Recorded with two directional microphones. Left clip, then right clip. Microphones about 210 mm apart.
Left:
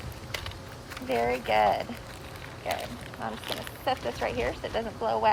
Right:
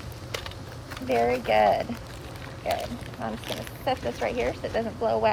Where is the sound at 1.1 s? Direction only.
10° left (ahead or behind).